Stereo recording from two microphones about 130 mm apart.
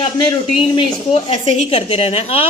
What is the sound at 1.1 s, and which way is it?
A woman's voice, 50° left (ahead or behind).